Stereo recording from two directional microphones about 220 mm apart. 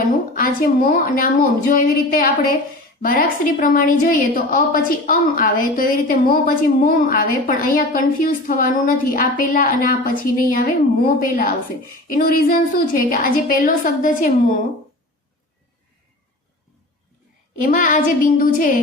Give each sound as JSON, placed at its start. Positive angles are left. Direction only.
{"t": 0.3, "sound": "a woman's voice", "side_deg": 40}
{"t": 17.6, "sound": "a woman's voice", "side_deg": 35}